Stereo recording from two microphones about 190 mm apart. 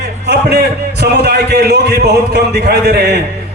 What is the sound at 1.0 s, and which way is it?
A man's voice, 55° right (ahead or behind).